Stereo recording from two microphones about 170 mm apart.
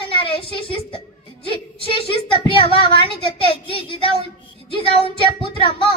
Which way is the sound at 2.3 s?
30° left (ahead or behind).